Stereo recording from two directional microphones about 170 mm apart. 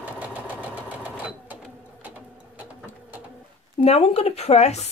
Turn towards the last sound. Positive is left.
turn(degrees=40)  # may be behind; listen again after turning